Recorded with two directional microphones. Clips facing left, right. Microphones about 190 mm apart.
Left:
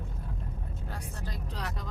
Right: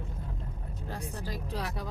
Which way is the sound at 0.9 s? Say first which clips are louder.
Right 5 dB; 10° right (ahead or behind).